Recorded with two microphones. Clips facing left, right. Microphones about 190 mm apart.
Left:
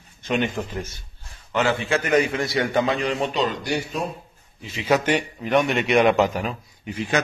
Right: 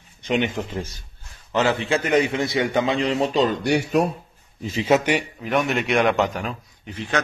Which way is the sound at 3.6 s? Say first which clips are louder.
Right 6 dB; 70° right (ahead or behind).